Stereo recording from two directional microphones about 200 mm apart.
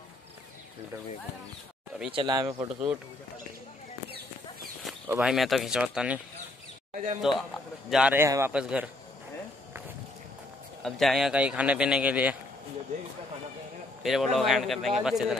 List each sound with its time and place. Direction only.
2.0 s speech: 25° right (ahead or behind)
2.7 s a man's voice: 5° right (ahead or behind)
5.0 s a man's voice: 5° right (ahead or behind)
6.9 s a sound: 45° right (ahead or behind)
7.2 s a man's voice: centre (ahead or behind)
10.8 s a man's voice: centre (ahead or behind)
14.0 s a man's voice: centre (ahead or behind)